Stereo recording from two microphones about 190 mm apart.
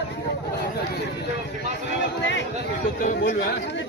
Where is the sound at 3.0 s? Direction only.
50° left (ahead or behind).